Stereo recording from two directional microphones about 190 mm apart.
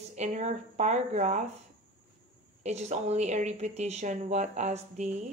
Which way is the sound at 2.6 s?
35° right (ahead or behind).